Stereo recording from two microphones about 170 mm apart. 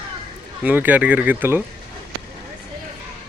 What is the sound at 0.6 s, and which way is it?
Speech, 10° right (ahead or behind).